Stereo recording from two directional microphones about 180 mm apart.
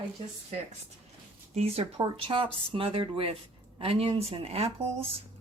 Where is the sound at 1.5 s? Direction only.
35° right (ahead or behind).